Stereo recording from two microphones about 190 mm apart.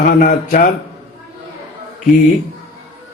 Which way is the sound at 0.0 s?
45° left (ahead or behind).